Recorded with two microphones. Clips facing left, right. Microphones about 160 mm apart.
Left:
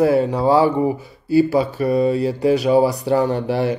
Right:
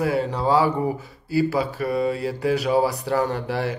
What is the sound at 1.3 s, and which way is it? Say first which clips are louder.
Speech: left 6 dB; 25° left (ahead or behind).